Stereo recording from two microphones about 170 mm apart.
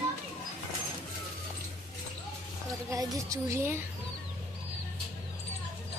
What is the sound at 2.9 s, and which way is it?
Speech, 20° right (ahead or behind).